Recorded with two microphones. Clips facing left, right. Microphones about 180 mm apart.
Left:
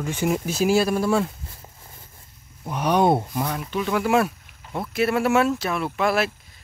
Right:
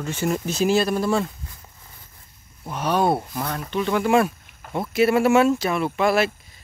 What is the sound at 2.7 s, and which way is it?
Speech, 15° left (ahead or behind).